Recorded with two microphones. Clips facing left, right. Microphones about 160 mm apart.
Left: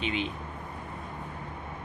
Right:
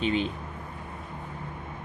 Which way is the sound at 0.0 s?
40° right (ahead or behind).